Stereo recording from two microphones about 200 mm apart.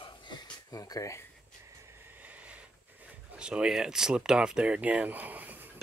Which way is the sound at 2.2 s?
5° right (ahead or behind).